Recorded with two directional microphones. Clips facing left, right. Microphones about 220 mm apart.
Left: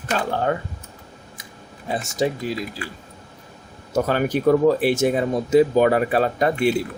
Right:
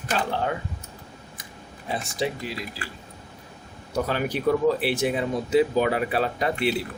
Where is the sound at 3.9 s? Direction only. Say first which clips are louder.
Left 5 dB; 45° left (ahead or behind).